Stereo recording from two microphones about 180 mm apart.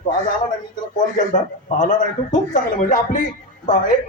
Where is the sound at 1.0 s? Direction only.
45° left (ahead or behind).